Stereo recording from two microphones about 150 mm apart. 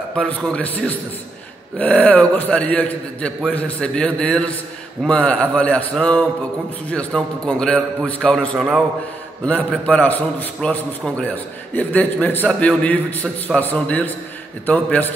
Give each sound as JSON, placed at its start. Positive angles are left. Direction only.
{"t": 0.3, "sound": "a man's voice", "side_deg": 10}